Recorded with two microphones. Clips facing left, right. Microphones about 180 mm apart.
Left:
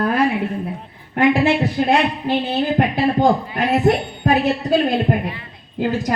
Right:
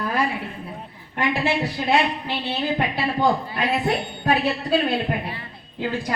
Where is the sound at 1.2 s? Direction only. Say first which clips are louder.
Left 7 dB; 50° left (ahead or behind).